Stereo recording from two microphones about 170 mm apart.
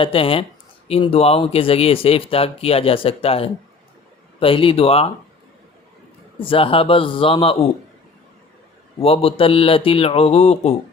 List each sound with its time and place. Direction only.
0.0 s speech: 30° left (ahead or behind)
6.4 s speech: 30° left (ahead or behind)
9.0 s speech: 35° left (ahead or behind)